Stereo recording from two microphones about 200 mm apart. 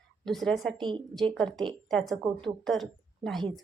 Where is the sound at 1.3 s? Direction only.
Centre (ahead or behind).